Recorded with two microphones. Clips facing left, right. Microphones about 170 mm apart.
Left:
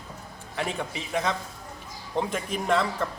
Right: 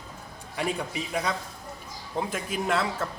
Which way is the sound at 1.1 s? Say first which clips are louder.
Left 4 dB; 10° right (ahead or behind).